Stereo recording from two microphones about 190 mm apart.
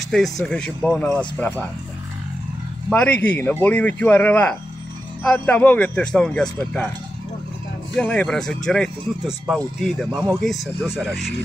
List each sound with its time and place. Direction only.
0.1 s a man's voice: 5° left (ahead or behind)
2.9 s a man's voice: 5° left (ahead or behind)
7.9 s a man's voice: 5° left (ahead or behind)